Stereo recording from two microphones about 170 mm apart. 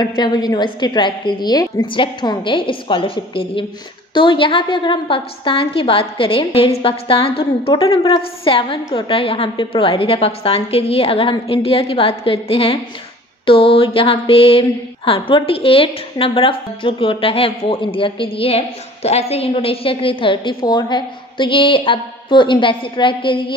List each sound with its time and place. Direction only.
0.0 s a woman's voice: 25° left (ahead or behind)